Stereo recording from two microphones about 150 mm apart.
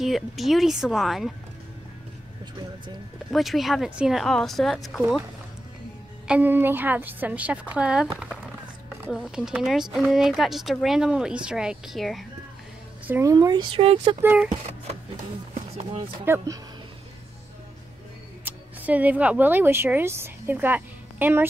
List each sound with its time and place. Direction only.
0.0 s speech: centre (ahead or behind)
3.3 s speech: centre (ahead or behind)
6.2 s a woman's voice: 10° right (ahead or behind)
13.0 s a woman's voice: 15° right (ahead or behind)
13.3 s speech: 25° right (ahead or behind)
14.2 s a woman's voice: 10° right (ahead or behind)
15.5 s run: 50° right (ahead or behind)
16.3 s a woman's voice: 15° right (ahead or behind)
18.4 s speech: 10° right (ahead or behind)